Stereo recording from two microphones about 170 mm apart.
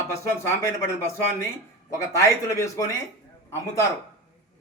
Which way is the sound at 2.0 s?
15° left (ahead or behind).